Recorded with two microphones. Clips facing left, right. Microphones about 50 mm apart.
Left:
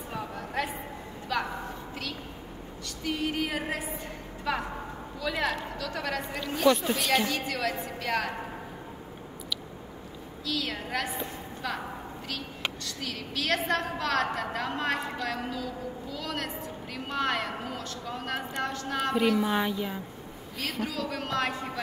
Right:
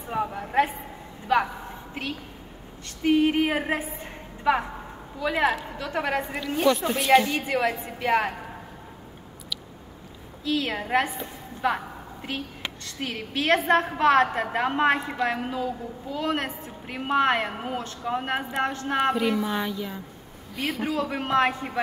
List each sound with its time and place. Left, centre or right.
0.1 s a sound: right
3.0 s a woman's voice: right
5.2 s a man's voice: centre
6.7 s speech: centre
7.2 s a woman's voice: right
10.4 s a woman's voice: right
19.1 s speech: centre
19.6 s speech: centre
20.5 s speech: centre
20.8 s a woman's voice: right